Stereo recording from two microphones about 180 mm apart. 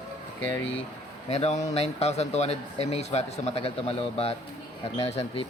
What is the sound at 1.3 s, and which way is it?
Speech, 40° left (ahead or behind).